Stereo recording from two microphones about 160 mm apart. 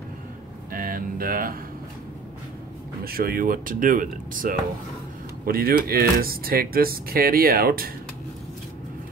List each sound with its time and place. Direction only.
0.7 s speech: 60° right (ahead or behind)
3.0 s speech: 70° right (ahead or behind)